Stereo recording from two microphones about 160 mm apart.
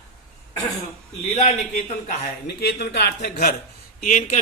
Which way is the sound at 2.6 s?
90° left.